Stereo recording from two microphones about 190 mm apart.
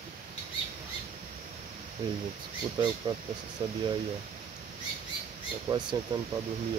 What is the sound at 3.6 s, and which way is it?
Speech, 25° right (ahead or behind).